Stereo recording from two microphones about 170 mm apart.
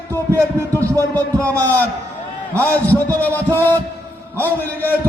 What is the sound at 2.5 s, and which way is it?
A man's voice, 10° left (ahead or behind).